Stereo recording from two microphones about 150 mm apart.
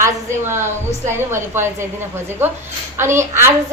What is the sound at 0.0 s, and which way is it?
A woman's voice, 15° right (ahead or behind).